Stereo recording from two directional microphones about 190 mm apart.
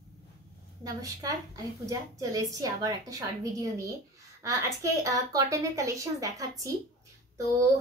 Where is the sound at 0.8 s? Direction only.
20° right (ahead or behind).